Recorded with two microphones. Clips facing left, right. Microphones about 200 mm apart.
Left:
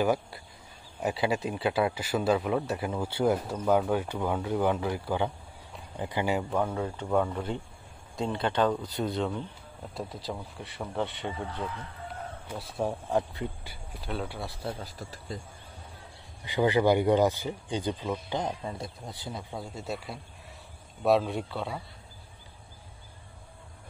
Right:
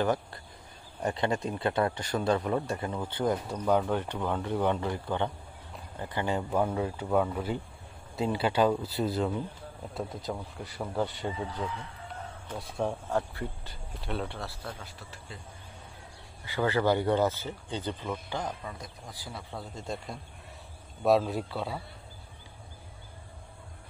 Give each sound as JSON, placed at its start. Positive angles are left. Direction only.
{"t": 0.0, "sound": "speech", "side_deg": 10}
{"t": 6.5, "sound": "speech", "side_deg": -10}
{"t": 12.4, "sound": "speech", "side_deg": 5}
{"t": 13.1, "sound": "speech", "side_deg": 15}
{"t": 14.0, "sound": "speech", "side_deg": 0}
{"t": 14.5, "sound": "speech", "side_deg": 25}
{"t": 16.4, "sound": "speech", "side_deg": 15}